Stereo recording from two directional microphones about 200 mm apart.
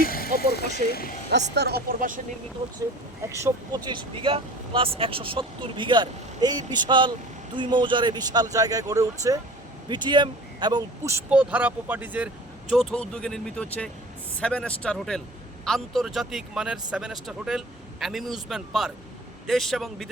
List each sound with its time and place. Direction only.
0.0 s vehicle: 50° left (ahead or behind)
0.9 s speech: 50° left (ahead or behind)
1.5 s speech: 55° right (ahead or behind)
3.2 s speech: 15° right (ahead or behind)
3.8 s speech: 25° right (ahead or behind); by 12.3 s 10° right (ahead or behind)
12.7 s speech: 5° left (ahead or behind)